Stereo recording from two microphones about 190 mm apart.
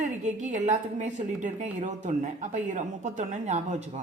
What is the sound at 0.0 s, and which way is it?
Speech, 40° right (ahead or behind).